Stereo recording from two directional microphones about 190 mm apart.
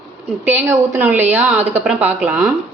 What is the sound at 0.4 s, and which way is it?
A woman's voice, 10° right (ahead or behind).